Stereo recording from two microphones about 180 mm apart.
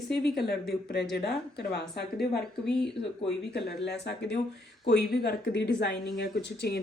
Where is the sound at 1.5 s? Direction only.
65° left (ahead or behind).